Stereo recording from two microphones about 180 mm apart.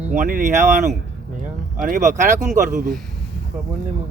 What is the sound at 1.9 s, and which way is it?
Speech, 45° right (ahead or behind).